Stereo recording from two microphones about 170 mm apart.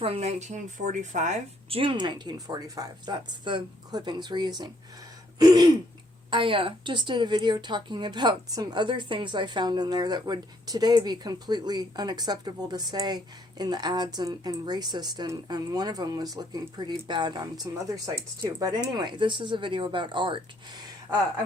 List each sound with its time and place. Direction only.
0.0 s a woman's voice: 40° right (ahead or behind)